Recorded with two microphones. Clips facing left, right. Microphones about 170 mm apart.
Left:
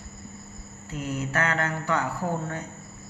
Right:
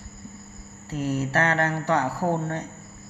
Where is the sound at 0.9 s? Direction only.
35° right (ahead or behind).